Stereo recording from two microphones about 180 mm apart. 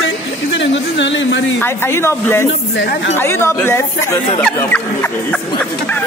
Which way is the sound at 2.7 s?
80° left.